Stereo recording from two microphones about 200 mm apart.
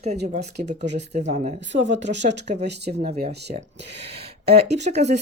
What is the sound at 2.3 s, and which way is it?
Speech, 60° right (ahead or behind).